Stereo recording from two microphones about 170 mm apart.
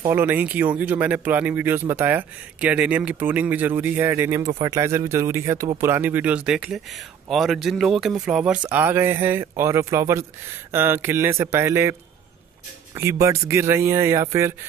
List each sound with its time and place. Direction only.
0.0 s speech: 15° right (ahead or behind)